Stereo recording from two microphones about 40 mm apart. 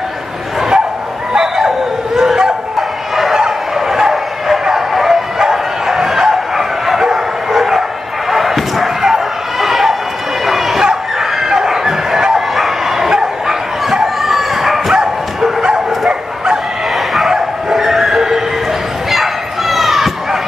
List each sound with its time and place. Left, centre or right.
0.6 s bow-wow: centre
2.1 s dog: centre
3.2 s bow-wow: centre
10.4 s chicken: centre
12.5 s dog: centre
13.2 s bow-wow: centre
16.9 s bow-wow: centre
17.3 s dog: centre
19.7 s basketball bounce: centre